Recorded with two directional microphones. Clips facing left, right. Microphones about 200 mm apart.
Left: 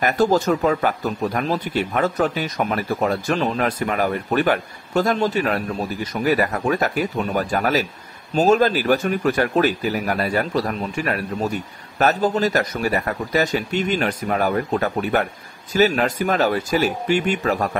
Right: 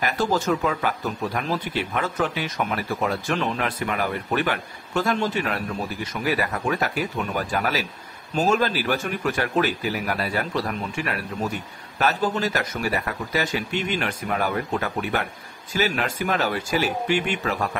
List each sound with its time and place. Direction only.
0.0 s speech: 40° left (ahead or behind)